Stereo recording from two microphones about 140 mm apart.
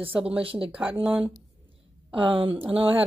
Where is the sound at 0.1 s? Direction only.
10° right (ahead or behind).